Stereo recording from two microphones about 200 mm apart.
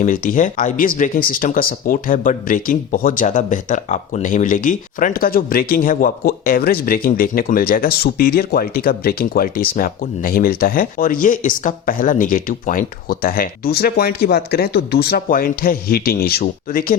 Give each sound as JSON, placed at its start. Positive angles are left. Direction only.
{"t": 0.0, "sound": "speech", "side_deg": 45}